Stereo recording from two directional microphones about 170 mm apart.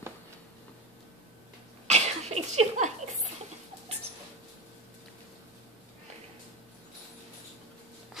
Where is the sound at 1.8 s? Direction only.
40° right (ahead or behind).